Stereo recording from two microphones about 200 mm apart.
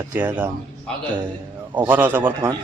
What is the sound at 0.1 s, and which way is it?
Speech, 10° right (ahead or behind).